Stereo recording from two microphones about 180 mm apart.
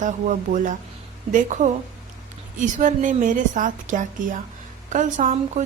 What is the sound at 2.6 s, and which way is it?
A woman's voice, 45° right (ahead or behind).